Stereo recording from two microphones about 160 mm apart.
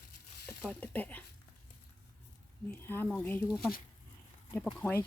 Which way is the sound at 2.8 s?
10° left (ahead or behind).